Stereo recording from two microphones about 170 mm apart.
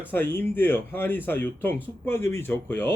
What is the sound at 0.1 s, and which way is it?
A man's voice, 10° left (ahead or behind).